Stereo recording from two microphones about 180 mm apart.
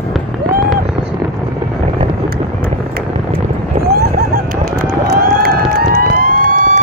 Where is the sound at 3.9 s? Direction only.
60° right (ahead or behind).